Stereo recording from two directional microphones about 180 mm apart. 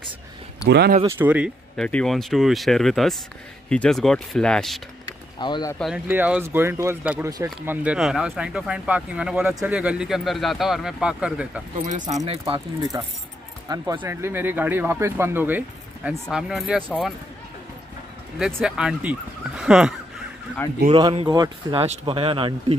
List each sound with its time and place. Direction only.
0.7 s speech: 65° right (ahead or behind)
1.0 s speech: 10° right (ahead or behind)
1.8 s speech: 5° left (ahead or behind)
5.4 s speech: 25° left (ahead or behind)
6.0 s speech: 10° right (ahead or behind)
7.2 s speech: 20° right (ahead or behind)
7.7 s speech: 5° right (ahead or behind)
12.5 s speech: 20° right (ahead or behind); by 16.8 s 5° right (ahead or behind)
18.4 s speech: 5° right (ahead or behind)
20.9 s speech: 30° right (ahead or behind)
21.8 s speech: 35° right (ahead or behind)